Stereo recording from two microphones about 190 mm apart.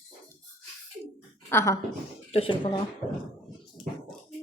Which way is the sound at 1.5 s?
15° left (ahead or behind).